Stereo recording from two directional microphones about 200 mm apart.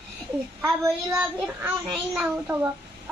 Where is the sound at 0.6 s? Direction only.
15° right (ahead or behind).